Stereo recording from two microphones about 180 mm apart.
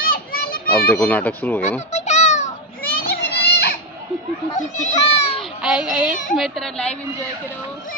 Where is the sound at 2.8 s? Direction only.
60° left (ahead or behind).